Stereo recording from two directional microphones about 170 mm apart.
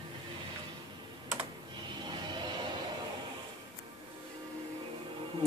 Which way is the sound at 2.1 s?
25° right (ahead or behind).